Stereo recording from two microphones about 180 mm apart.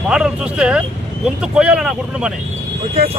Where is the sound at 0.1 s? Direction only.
5° right (ahead or behind).